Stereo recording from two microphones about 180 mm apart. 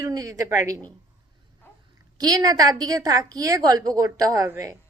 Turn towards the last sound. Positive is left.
turn(degrees=-20)  # may be behind; listen again after turning